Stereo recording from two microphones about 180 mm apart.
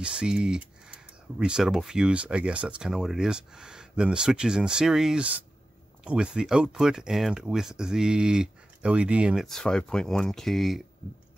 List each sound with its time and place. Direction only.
0.0 s speech: 5° right (ahead or behind)